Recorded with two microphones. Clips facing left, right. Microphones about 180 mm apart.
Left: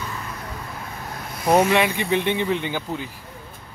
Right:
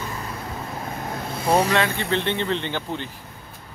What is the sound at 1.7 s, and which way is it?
Speech, 15° left (ahead or behind).